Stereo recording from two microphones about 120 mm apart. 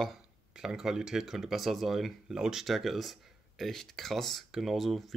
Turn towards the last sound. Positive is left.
turn(degrees=0)  # may be behind; listen again after turning